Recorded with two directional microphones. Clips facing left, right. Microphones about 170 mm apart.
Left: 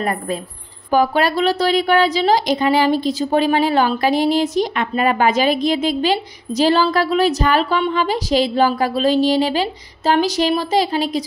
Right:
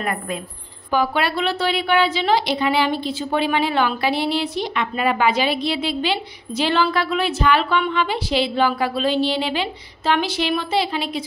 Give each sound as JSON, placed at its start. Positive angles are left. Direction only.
{"t": 0.0, "sound": "a woman's voice", "side_deg": 35}